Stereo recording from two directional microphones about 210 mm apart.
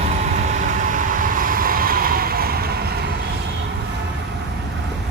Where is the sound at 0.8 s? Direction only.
40° right (ahead or behind).